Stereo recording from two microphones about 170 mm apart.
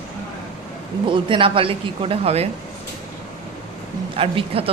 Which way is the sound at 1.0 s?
30° right (ahead or behind).